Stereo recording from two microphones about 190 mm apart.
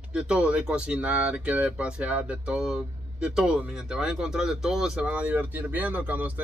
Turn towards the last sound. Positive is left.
turn(degrees=-10)  # may be behind; listen again after turning